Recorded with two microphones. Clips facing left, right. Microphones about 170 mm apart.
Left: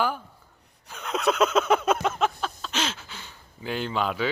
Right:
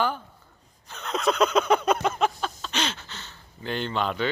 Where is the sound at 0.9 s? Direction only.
10° left (ahead or behind).